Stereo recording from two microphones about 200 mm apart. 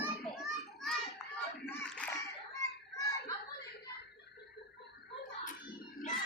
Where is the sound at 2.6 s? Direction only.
15° left (ahead or behind).